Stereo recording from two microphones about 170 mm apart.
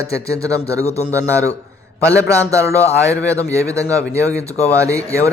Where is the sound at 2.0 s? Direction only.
20° right (ahead or behind).